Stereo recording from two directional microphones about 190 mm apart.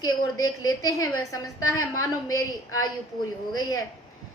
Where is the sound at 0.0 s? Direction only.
20° left (ahead or behind).